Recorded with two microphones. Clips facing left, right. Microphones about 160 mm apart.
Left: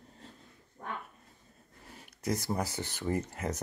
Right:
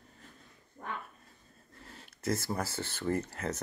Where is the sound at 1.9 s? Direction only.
15° left (ahead or behind).